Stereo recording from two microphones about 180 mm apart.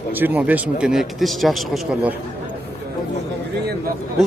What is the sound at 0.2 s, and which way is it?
Speech, 10° right (ahead or behind).